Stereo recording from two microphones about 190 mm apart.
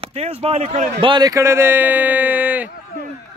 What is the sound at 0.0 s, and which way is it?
Speech, 30° right (ahead or behind).